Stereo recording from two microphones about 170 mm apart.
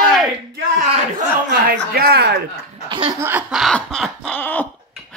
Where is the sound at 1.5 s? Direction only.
60° right (ahead or behind).